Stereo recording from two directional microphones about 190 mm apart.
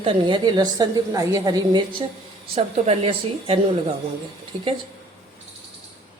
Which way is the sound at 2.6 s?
35° right (ahead or behind).